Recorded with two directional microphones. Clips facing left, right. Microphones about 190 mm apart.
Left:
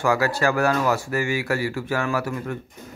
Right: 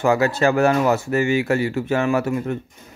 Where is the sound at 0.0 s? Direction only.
20° right (ahead or behind).